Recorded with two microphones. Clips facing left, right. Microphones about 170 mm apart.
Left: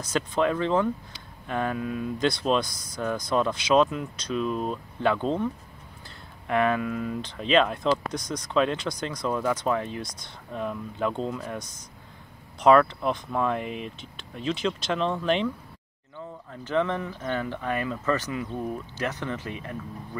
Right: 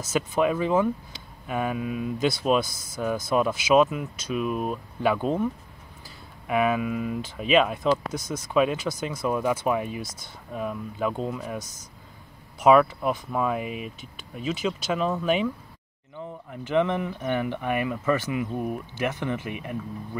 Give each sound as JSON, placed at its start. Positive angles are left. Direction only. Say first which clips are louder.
{"t": 0.0, "sound": "speech", "louder": "right 1 dB", "side_deg": -5}
{"t": 16.2, "sound": "speech", "louder": "right 3 dB", "side_deg": -15}